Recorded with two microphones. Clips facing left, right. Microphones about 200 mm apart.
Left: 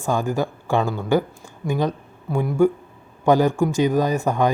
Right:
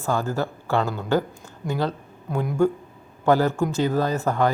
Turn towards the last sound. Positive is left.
turn(degrees=15)  # may be behind; listen again after turning